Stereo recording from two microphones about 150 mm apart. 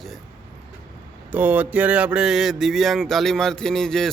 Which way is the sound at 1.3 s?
10° right (ahead or behind).